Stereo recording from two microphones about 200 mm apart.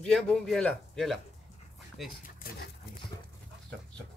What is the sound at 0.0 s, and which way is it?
Speech, 5° left (ahead or behind).